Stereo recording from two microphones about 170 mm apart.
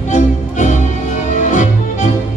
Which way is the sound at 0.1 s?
45° left (ahead or behind).